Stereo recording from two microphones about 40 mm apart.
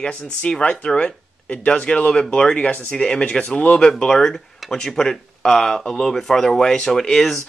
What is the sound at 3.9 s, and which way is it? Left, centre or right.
Speech, centre.